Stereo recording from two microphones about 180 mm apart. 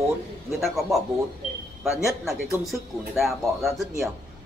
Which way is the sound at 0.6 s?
Centre (ahead or behind).